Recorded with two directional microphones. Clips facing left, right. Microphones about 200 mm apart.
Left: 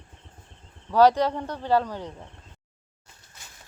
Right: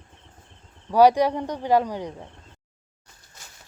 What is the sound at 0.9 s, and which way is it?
Speech, 10° right (ahead or behind).